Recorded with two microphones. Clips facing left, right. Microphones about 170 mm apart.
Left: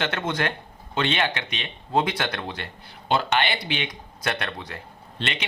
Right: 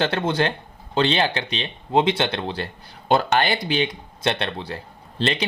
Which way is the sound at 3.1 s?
45° right (ahead or behind).